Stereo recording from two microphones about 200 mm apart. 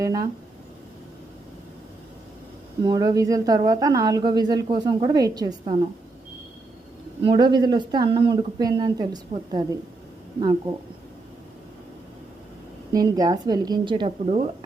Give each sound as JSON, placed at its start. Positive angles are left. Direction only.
{"t": 0.0, "sound": "speech", "side_deg": -20}
{"t": 2.8, "sound": "speech", "side_deg": -20}
{"t": 7.3, "sound": "speech", "side_deg": -20}
{"t": 12.9, "sound": "speech", "side_deg": -20}